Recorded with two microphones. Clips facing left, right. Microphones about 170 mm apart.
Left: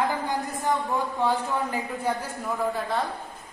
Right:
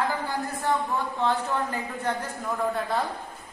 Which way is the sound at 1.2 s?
10° left (ahead or behind).